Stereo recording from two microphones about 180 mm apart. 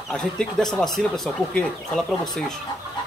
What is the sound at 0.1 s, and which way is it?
Speech, 5° left (ahead or behind).